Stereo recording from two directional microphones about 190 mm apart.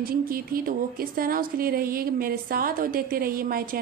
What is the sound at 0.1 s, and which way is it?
Speech, 50° right (ahead or behind).